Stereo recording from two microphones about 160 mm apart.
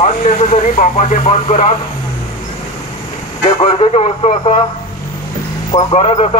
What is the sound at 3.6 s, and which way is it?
A man's voice, 35° left (ahead or behind).